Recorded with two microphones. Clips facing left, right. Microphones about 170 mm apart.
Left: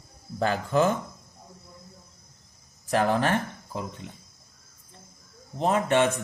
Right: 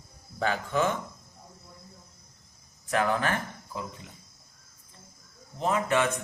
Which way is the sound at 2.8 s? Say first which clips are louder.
Left 3 dB; 30° left (ahead or behind).